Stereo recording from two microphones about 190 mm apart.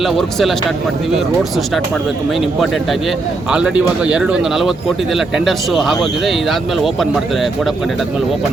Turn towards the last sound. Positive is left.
turn(degrees=0)  # may be behind; listen again after turning